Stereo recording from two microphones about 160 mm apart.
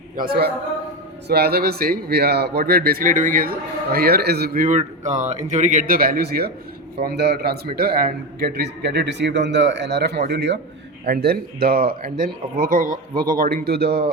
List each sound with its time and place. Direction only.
1.3 s a man's voice: 80° right
11.0 s a man's voice: 70° right (ahead or behind)